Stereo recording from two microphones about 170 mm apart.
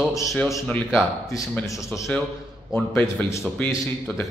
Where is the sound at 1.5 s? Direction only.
20° left (ahead or behind).